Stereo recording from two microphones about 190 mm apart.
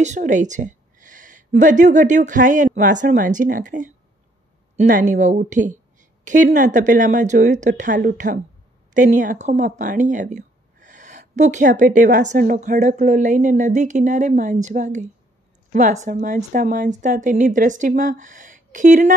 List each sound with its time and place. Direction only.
0.0 s a woman's voice: 40° right (ahead or behind)